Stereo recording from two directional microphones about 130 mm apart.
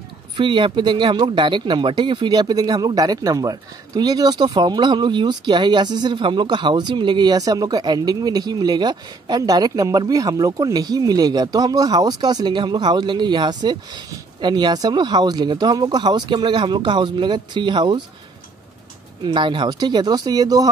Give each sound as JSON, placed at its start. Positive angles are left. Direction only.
{"t": 0.4, "sound": "speech", "side_deg": -40}
{"t": 19.2, "sound": "speech", "side_deg": -35}